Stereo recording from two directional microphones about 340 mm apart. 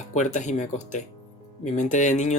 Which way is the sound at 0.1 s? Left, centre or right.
Left.